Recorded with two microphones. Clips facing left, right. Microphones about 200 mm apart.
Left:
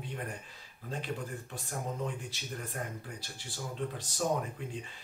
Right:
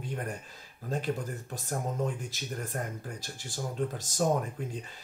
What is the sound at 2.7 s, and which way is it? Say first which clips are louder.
Speech: right 4 dB; 45° right (ahead or behind).